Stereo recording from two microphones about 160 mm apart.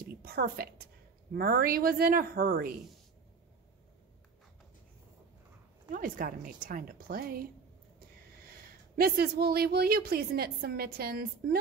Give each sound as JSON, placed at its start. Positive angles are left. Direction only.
{"t": 0.0, "sound": "a sound", "side_deg": -70}
{"t": 1.3, "sound": "a woman's voice", "side_deg": -70}
{"t": 5.9, "sound": "a woman's voice", "side_deg": -60}
{"t": 8.9, "sound": "a woman's voice", "side_deg": -70}